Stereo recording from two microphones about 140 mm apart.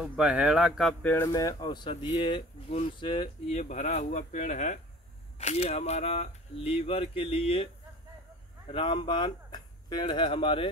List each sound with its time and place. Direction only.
0.2 s speech: 5° right (ahead or behind)
1.0 s speech: 15° left (ahead or behind)
1.3 s speech: 25° left (ahead or behind)
3.5 s speech: 55° left (ahead or behind)
5.4 s speech: 50° left (ahead or behind)
8.7 s speech: 35° left (ahead or behind)